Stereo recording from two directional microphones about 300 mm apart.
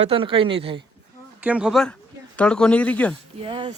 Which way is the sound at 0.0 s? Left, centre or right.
Centre.